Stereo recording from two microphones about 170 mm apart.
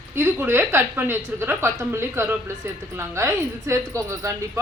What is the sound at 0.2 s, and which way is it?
Speech, 15° right (ahead or behind).